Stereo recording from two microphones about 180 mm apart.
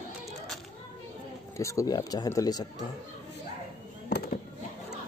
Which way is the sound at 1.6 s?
15° left (ahead or behind).